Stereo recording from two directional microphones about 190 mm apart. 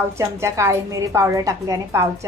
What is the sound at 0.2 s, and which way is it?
A woman's voice, 15° right (ahead or behind).